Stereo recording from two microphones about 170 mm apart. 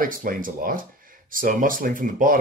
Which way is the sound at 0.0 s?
55° right (ahead or behind).